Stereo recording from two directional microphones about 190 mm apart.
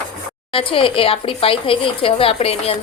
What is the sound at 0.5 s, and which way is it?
Speech, 30° left (ahead or behind).